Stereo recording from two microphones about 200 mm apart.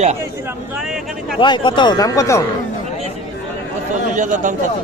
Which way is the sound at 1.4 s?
25° left (ahead or behind).